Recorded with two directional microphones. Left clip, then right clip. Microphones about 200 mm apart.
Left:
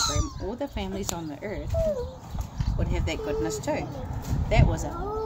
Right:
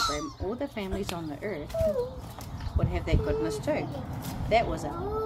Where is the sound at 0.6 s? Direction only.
30° left (ahead or behind).